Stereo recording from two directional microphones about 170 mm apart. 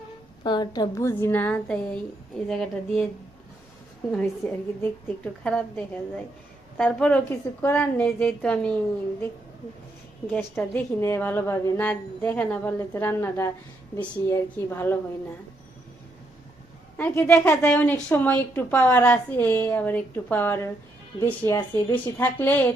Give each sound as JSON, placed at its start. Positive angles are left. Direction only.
{"t": 0.4, "sound": "a woman's voice", "side_deg": 25}
{"t": 4.1, "sound": "a woman's voice", "side_deg": 10}
{"t": 10.2, "sound": "a woman's voice", "side_deg": 10}
{"t": 17.0, "sound": "a woman's voice", "side_deg": 15}